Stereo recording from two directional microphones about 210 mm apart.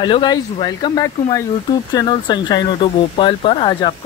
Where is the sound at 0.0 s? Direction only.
20° left (ahead or behind).